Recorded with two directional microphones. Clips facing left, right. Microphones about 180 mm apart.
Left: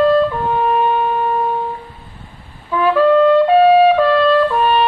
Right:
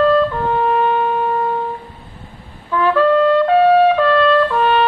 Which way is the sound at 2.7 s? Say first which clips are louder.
Left 1 dB; 10° left (ahead or behind).